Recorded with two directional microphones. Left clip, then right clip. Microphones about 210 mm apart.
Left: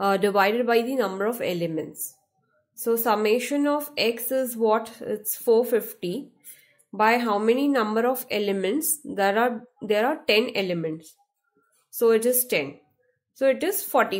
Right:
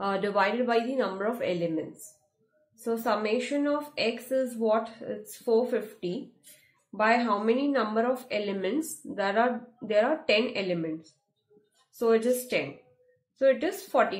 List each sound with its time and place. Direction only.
0.0 s a woman's voice: 45° left (ahead or behind)